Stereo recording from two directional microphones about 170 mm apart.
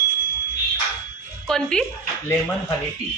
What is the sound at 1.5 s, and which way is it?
Speech, 5° left (ahead or behind).